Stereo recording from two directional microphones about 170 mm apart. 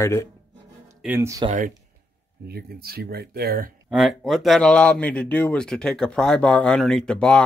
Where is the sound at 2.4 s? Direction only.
65° right (ahead or behind).